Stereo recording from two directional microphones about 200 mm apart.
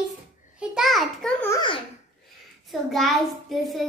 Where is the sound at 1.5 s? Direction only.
25° left (ahead or behind).